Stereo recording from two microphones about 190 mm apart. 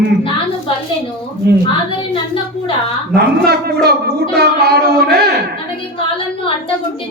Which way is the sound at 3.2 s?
55° right (ahead or behind).